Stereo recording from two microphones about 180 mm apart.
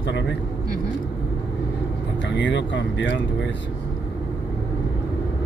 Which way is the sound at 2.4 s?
90° left.